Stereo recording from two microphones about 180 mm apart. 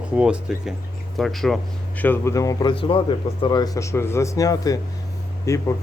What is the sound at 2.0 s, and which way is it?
A man's voice, 10° left (ahead or behind).